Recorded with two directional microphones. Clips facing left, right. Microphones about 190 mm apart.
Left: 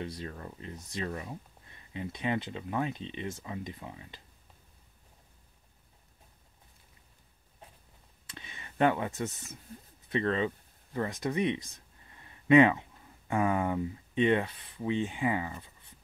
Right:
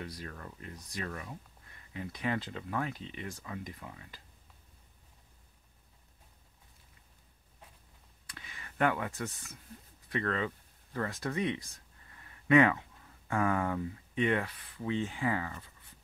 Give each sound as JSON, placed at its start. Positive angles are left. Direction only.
{"t": 0.0, "sound": "speech", "side_deg": 25}
{"t": 8.3, "sound": "speech", "side_deg": 25}